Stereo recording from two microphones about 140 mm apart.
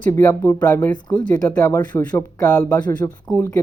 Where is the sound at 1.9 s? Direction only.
10° left (ahead or behind).